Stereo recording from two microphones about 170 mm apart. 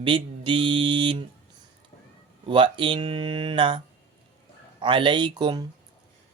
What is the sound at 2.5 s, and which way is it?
Speech, 30° right (ahead or behind).